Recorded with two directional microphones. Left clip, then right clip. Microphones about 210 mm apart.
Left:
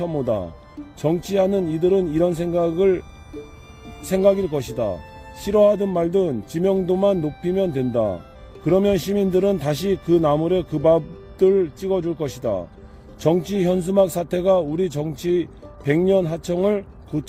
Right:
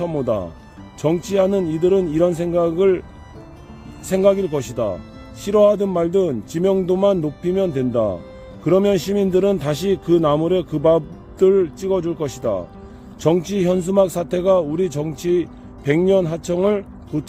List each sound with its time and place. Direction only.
0.0 s a man's voice: 15° left (ahead or behind)
4.1 s a man's voice: 20° left (ahead or behind)